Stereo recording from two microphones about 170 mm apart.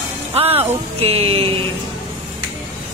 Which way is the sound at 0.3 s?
35° right (ahead or behind).